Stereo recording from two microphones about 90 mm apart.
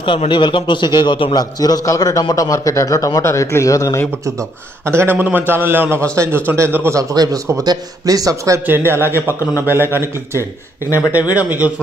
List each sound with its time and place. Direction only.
0.0 s a man's voice: 70° left (ahead or behind)
1.6 s a man's voice: 45° left (ahead or behind)
4.8 s a man's voice: 25° right (ahead or behind)
7.6 s a man's voice: 45° right (ahead or behind)
8.6 s a man's voice: 25° right (ahead or behind)